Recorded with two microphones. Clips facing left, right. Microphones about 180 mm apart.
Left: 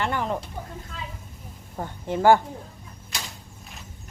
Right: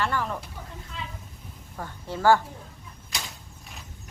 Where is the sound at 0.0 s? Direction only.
20° left (ahead or behind).